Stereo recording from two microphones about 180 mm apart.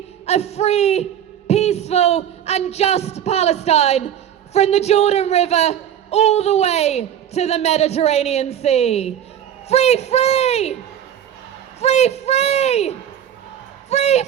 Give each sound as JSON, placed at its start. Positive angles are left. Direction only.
{"t": 0.3, "sound": "a man's voice", "side_deg": 35}
{"t": 11.8, "sound": "a man's voice", "side_deg": 35}
{"t": 13.9, "sound": "a man's voice", "side_deg": 40}